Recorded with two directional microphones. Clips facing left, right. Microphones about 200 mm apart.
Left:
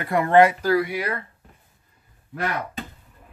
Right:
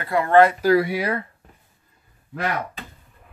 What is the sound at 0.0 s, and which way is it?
Speech, 20° left (ahead or behind).